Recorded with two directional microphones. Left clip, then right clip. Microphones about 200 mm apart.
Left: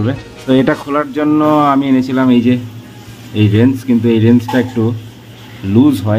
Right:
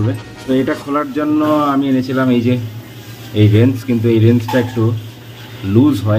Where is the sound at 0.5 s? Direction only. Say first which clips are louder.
Left 4 dB; 30° left (ahead or behind).